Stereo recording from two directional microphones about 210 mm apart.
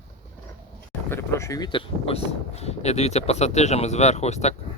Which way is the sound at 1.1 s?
15° left (ahead or behind).